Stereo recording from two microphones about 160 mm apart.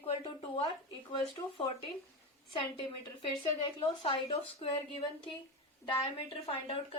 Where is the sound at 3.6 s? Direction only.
35° left (ahead or behind).